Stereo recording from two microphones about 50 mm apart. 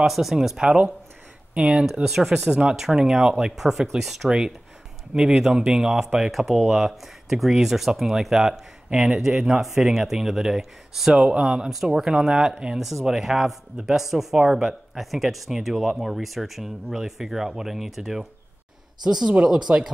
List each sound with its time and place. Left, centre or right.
0.0 s speech: centre
2.0 s speech: centre